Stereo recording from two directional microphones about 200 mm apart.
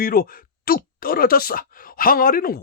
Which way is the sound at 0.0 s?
45° left (ahead or behind).